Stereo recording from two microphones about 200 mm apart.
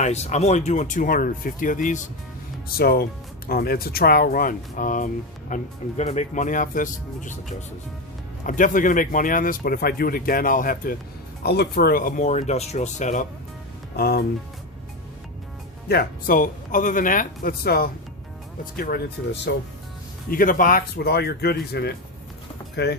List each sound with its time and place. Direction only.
0.0 s speech: 35° left (ahead or behind)
8.4 s speech: 40° left (ahead or behind)
13.9 s speech: 50° left (ahead or behind)
15.9 s speech: 50° left (ahead or behind)
20.3 s speech: 45° left (ahead or behind)